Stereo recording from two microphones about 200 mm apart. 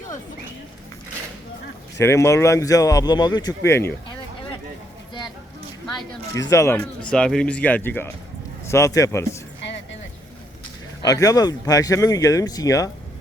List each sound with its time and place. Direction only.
2.0 s speech: 15° left (ahead or behind)
6.5 s speech: 10° left (ahead or behind)
11.0 s speech: 15° left (ahead or behind)